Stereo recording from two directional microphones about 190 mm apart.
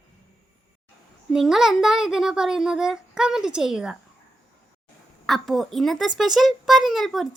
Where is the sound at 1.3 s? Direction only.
Centre (ahead or behind).